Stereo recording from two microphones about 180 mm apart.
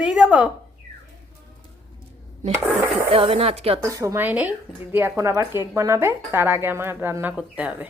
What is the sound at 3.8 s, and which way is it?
Speech, 20° right (ahead or behind).